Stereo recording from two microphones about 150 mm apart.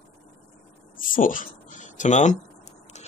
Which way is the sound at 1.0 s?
65° left (ahead or behind).